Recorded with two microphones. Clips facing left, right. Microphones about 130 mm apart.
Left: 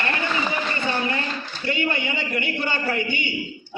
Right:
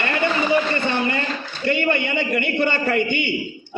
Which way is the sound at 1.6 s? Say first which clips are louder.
Right 5 dB; 60° right (ahead or behind).